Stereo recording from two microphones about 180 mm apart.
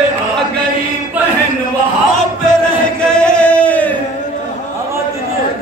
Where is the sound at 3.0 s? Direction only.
5° left (ahead or behind).